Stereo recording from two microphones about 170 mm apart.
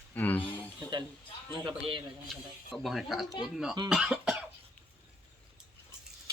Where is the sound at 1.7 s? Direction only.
30° right (ahead or behind).